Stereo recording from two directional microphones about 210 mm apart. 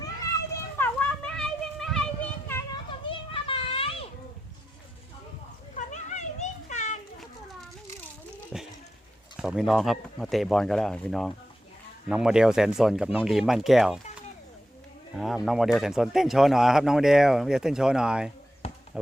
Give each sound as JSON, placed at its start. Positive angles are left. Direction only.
{"t": 0.8, "sound": "children playing", "side_deg": 5}
{"t": 3.1, "sound": "children playing", "side_deg": 25}
{"t": 5.7, "sound": "children playing", "side_deg": 35}
{"t": 8.5, "sound": "a sound", "side_deg": 0}
{"t": 9.4, "sound": "speech", "side_deg": -5}
{"t": 15.1, "sound": "speech", "side_deg": 0}
{"t": 18.6, "sound": "basketball bounce", "side_deg": 30}